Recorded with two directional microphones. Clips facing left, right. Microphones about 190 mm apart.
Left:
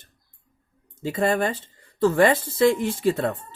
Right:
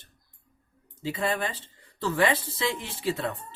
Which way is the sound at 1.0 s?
50° left (ahead or behind).